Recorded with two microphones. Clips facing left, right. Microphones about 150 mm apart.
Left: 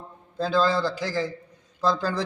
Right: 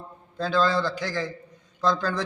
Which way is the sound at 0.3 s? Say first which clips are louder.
Left 1 dB; 10° left (ahead or behind).